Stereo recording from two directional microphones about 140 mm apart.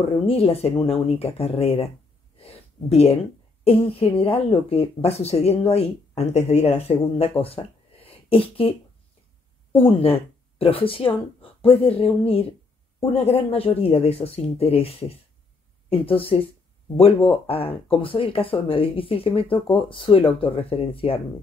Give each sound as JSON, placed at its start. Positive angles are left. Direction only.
{"t": 0.3, "sound": "speech", "side_deg": 45}
{"t": 2.3, "sound": "a sound", "side_deg": 45}
{"t": 3.6, "sound": "speech", "side_deg": 45}